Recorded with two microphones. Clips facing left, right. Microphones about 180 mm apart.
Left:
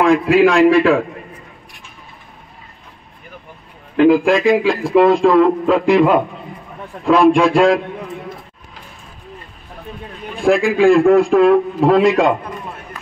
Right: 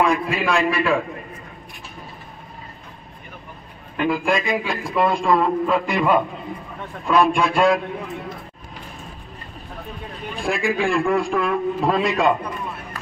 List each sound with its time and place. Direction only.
0.0 s a man's voice: 85° left; by 1.0 s 70° left (ahead or behind)
3.9 s a man's voice: 75° left (ahead or behind)
7.1 s a man's voice: 90° left
10.4 s a man's voice: 75° left (ahead or behind)